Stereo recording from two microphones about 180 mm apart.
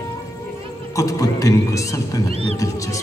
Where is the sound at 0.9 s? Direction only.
20° left (ahead or behind).